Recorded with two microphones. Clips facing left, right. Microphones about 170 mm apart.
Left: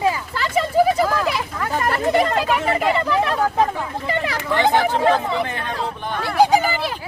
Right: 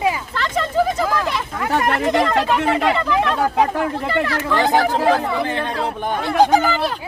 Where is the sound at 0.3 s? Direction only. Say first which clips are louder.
Left 4 dB; 10° left (ahead or behind).